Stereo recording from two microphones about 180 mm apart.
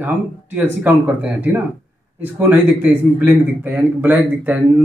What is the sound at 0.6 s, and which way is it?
A man's voice, 10° right (ahead or behind).